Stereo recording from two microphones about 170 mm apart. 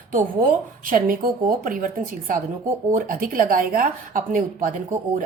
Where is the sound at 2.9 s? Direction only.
55° right (ahead or behind).